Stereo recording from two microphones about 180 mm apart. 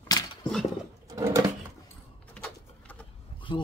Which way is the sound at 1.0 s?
20° right (ahead or behind).